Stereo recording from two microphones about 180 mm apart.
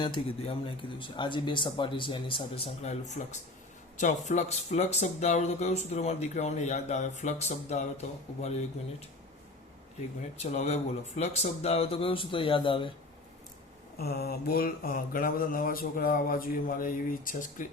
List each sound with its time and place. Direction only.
0.0 s speech: 30° left (ahead or behind)
10.4 s speech: 35° left (ahead or behind)
14.0 s mantra: 60° left (ahead or behind)